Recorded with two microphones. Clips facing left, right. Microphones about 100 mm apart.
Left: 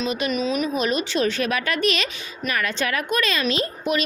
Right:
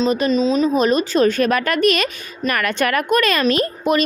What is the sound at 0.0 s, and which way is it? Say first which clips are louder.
Speech: right 7 dB; 35° right (ahead or behind).